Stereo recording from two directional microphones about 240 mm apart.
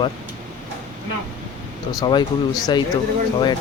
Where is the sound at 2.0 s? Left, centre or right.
Centre.